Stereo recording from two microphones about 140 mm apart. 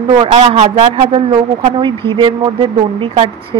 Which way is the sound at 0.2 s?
50° right (ahead or behind).